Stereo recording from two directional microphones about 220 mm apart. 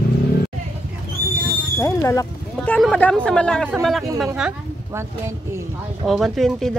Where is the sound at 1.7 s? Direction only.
15° left (ahead or behind).